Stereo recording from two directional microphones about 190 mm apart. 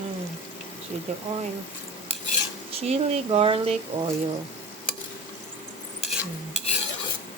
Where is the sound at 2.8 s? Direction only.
35° right (ahead or behind).